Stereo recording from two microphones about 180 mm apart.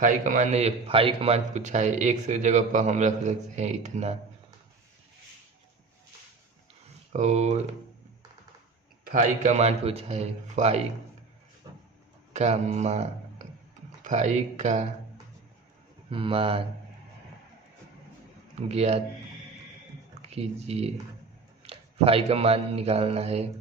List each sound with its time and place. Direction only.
0.0 s a man's voice: 45° right (ahead or behind)
7.1 s a man's voice: 40° right (ahead or behind)
9.0 s a man's voice: 45° right (ahead or behind)
12.3 s a man's voice: 40° right (ahead or behind)
16.0 s a man's voice: 30° right (ahead or behind)
18.7 s a man's voice: 35° right (ahead or behind)
20.2 s a man's voice: 35° right (ahead or behind)